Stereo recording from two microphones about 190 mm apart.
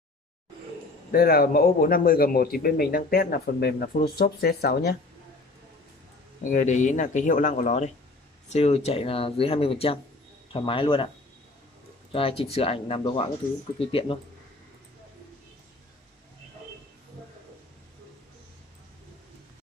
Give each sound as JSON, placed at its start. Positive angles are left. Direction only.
{"t": 1.1, "sound": "a man's voice", "side_deg": 50}
{"t": 6.4, "sound": "speech", "side_deg": 40}
{"t": 12.1, "sound": "speech", "side_deg": 30}